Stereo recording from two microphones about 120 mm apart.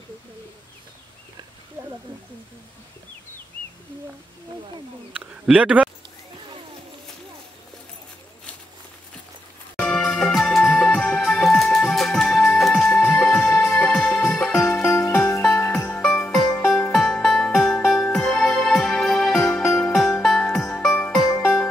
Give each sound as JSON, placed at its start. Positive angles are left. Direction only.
{"t": 5.2, "sound": "speech", "side_deg": -10}
{"t": 9.8, "sound": "music", "side_deg": 5}
{"t": 15.4, "sound": "music", "side_deg": 5}